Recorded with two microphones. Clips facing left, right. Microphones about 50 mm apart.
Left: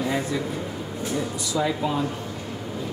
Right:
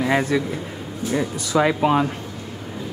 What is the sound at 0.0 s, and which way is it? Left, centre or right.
A man's voice, right.